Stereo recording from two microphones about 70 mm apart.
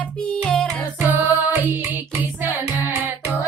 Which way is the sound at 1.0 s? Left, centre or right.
Right.